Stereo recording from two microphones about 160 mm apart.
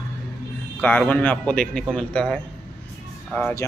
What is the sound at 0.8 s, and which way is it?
A man's voice, 10° left (ahead or behind).